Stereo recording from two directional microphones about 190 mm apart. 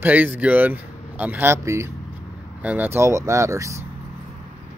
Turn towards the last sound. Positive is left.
turn(degrees=-15)  # may be behind; listen again after turning